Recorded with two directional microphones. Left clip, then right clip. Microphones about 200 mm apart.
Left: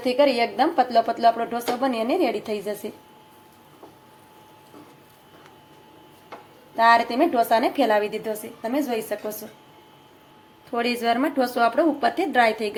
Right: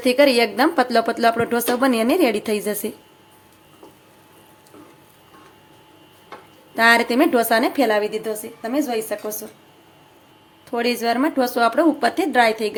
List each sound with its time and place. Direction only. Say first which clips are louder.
0.0 s speech: right 4 dB; 25° right (ahead or behind)
6.7 s a woman's voice: right 2 dB; 30° right (ahead or behind); by 9.3 s 10° right (ahead or behind)
10.7 s a woman's voice: right 2 dB; 15° right (ahead or behind)